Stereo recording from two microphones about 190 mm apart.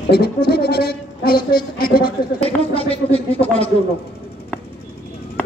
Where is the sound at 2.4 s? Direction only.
30° left (ahead or behind).